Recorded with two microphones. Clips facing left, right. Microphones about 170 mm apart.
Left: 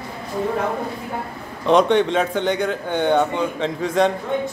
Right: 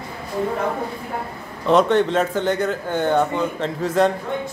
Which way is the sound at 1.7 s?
5° right (ahead or behind).